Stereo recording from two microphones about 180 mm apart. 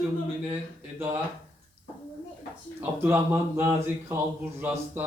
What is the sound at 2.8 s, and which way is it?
Speech, 10° right (ahead or behind).